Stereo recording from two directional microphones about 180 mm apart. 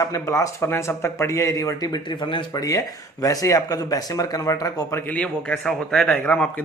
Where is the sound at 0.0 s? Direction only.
20° left (ahead or behind).